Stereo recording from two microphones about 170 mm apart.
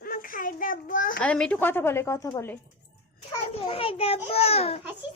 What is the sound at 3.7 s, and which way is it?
A child's voice, 35° left (ahead or behind).